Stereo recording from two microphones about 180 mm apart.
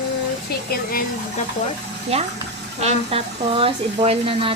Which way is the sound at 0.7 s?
55° left (ahead or behind).